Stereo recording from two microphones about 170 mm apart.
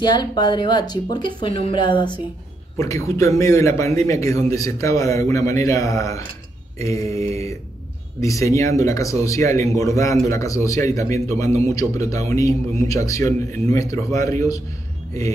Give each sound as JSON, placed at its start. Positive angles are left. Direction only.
{"t": 0.0, "sound": "speech", "side_deg": 25}
{"t": 6.8, "sound": "mantra", "side_deg": 15}
{"t": 8.2, "sound": "speech", "side_deg": 20}